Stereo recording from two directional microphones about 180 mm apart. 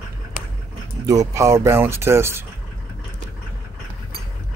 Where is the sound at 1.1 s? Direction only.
20° right (ahead or behind).